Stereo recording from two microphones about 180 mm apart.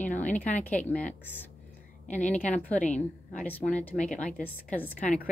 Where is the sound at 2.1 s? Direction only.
40° left (ahead or behind).